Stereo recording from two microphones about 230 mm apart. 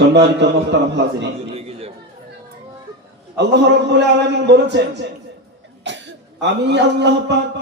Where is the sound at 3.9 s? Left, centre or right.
Right.